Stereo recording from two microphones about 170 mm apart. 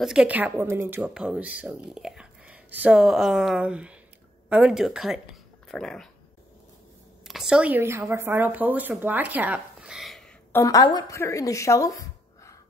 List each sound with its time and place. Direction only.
0.0 s speech: 5° right (ahead or behind)
7.2 s speech: 5° right (ahead or behind)
10.5 s a woman's voice: 20° left (ahead or behind)